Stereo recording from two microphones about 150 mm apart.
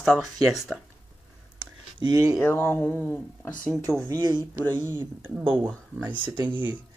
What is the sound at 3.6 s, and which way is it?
Speech, 20° right (ahead or behind).